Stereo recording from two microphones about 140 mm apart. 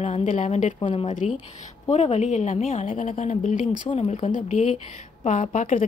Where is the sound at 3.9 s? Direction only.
40° left (ahead or behind).